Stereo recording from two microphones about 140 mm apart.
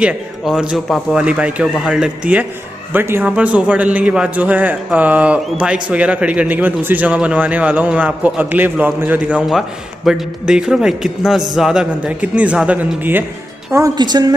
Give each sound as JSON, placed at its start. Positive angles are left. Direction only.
{"t": 0.0, "sound": "a man's voice", "side_deg": -5}